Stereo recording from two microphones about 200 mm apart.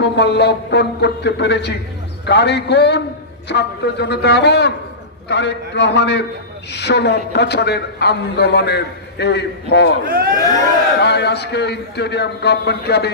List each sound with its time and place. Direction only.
0.0 s a woman's voice: 55° left (ahead or behind)
10.0 s speech: 45° right (ahead or behind)
11.0 s a woman's voice: 55° left (ahead or behind)